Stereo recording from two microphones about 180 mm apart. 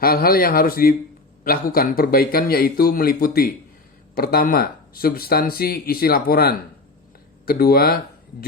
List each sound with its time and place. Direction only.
0.0 s speech: 55° left (ahead or behind)